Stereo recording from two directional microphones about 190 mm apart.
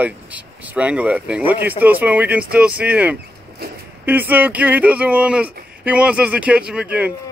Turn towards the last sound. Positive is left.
turn(degrees=-5)  # may be behind; listen again after turning